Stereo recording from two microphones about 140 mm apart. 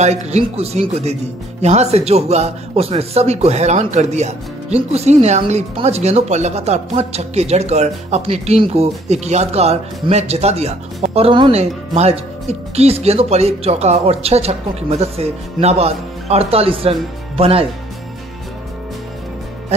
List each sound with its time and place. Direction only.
0.0 s speech: 55° right (ahead or behind)
11.5 s speech: 50° right (ahead or behind)